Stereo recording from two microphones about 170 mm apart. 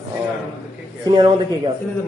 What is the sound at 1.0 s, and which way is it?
Speech, 25° right (ahead or behind).